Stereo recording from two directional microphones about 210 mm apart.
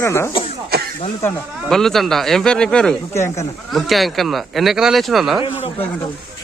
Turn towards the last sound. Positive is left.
turn(degrees=0)  # may be behind; listen again after turning